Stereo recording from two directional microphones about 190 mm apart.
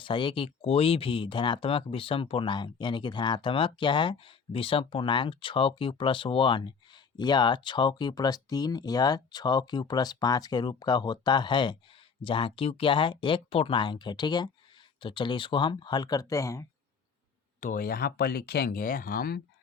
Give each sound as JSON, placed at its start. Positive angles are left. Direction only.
{"t": 0.0, "sound": "speech", "side_deg": 25}
{"t": 17.6, "sound": "speech", "side_deg": 45}